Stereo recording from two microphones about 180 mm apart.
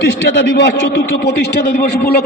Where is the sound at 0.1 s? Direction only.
90° left.